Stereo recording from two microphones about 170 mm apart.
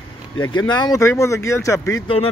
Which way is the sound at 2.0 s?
35° left (ahead or behind).